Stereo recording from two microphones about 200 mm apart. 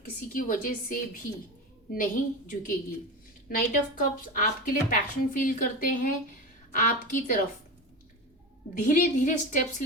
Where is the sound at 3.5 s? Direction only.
40° left (ahead or behind).